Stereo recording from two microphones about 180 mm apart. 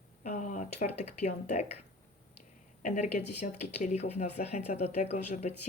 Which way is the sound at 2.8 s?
40° left (ahead or behind).